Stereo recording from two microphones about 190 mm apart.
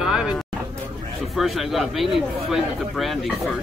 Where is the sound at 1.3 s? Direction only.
Centre (ahead or behind).